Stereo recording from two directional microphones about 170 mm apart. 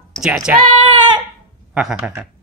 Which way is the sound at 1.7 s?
5° right (ahead or behind).